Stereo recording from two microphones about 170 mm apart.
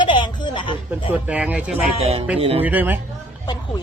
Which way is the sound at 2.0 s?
35° right (ahead or behind).